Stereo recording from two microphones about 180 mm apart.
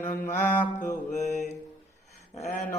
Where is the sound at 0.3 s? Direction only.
10° left (ahead or behind).